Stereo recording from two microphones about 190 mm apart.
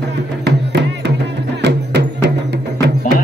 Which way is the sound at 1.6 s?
65° right (ahead or behind).